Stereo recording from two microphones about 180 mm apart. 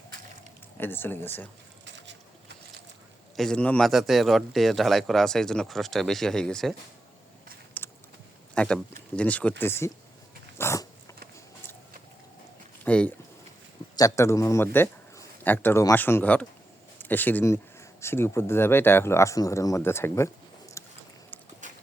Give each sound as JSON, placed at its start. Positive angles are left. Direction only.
{"t": 0.8, "sound": "speech", "side_deg": 10}
{"t": 3.3, "sound": "a man's voice", "side_deg": 5}
{"t": 7.8, "sound": "a sound", "side_deg": 10}
{"t": 8.5, "sound": "speech", "side_deg": 5}
{"t": 10.6, "sound": "dog", "side_deg": 15}
{"t": 12.8, "sound": "a sound", "side_deg": 5}
{"t": 13.9, "sound": "speech", "side_deg": 15}
{"t": 21.6, "sound": "walk", "side_deg": -45}